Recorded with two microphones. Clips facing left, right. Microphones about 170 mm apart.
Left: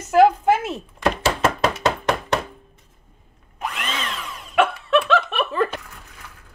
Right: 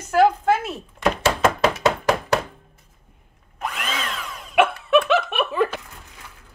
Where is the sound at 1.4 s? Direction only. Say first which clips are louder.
Right 2 dB; centre (ahead or behind).